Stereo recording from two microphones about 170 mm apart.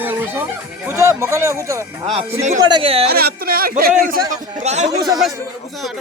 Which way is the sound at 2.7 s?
30° right (ahead or behind).